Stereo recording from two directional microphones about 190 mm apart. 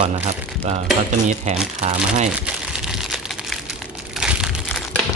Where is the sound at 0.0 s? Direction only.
40° right (ahead or behind).